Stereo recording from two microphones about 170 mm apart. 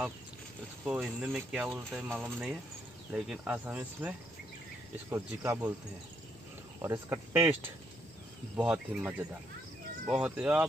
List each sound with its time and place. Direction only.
0.8 s speech: 5° right (ahead or behind)
5.1 s speech: 15° right (ahead or behind)
6.8 s speech: 15° right (ahead or behind)